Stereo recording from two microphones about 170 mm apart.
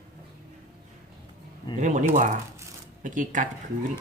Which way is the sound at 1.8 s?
50° right (ahead or behind).